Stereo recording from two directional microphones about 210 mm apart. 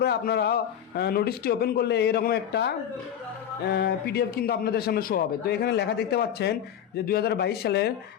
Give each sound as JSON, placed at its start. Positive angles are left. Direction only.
{"t": 0.0, "sound": "a man's voice", "side_deg": 50}